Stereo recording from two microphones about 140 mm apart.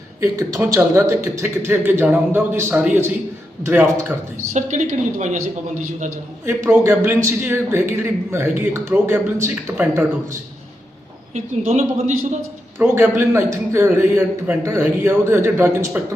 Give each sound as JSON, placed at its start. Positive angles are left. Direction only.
{"t": 0.2, "sound": "speech", "side_deg": -20}
{"t": 4.5, "sound": "a woman's voice", "side_deg": -60}
{"t": 6.4, "sound": "speech", "side_deg": -15}
{"t": 11.3, "sound": "a woman's voice", "side_deg": -55}
{"t": 12.8, "sound": "speech", "side_deg": -15}